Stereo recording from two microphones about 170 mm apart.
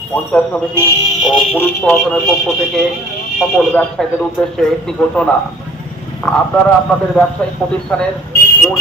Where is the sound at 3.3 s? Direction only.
5° left (ahead or behind).